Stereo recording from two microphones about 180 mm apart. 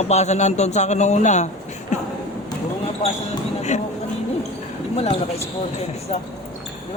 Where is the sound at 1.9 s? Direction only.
40° left (ahead or behind).